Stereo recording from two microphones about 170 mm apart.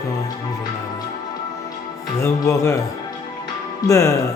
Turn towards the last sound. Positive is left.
turn(degrees=20)  # may be behind; listen again after turning